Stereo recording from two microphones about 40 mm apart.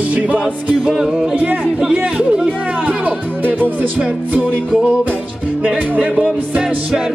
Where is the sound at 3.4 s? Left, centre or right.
Right.